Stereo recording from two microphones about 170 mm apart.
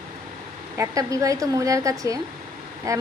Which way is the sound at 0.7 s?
20° right (ahead or behind).